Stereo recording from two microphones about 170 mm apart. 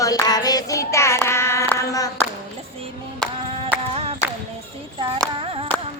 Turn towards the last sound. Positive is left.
turn(degrees=-35)  # may be behind; listen again after turning